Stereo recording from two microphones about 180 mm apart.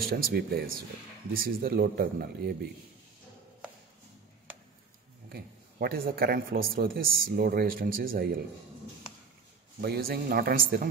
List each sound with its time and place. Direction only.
0.0 s speech: 55° right (ahead or behind)
5.3 s speech: 55° right (ahead or behind)
9.8 s speech: 60° right (ahead or behind)